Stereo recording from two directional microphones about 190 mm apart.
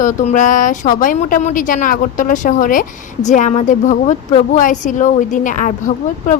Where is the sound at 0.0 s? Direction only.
40° left (ahead or behind).